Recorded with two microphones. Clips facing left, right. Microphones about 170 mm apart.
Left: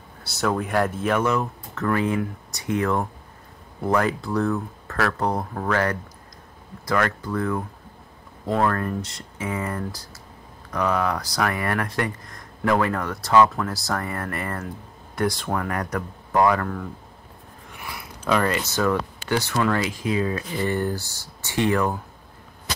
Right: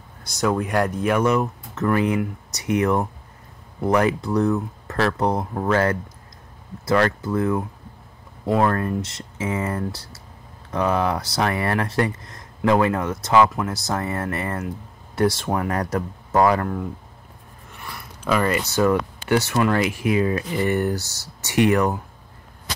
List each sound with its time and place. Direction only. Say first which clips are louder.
0.3 s speech: right 2 dB; centre (ahead or behind)
1.2 s speech: right 3 dB; 20° right (ahead or behind)
8.6 s speech: right 2 dB; 25° right (ahead or behind)
18.2 s speech: right 1 dB; 5° right (ahead or behind)
19.6 s speech: right 3 dB; 20° right (ahead or behind)
20.9 s speech: right 3 dB; 80° right
21.5 s speech: right 4 dB; 20° right (ahead or behind)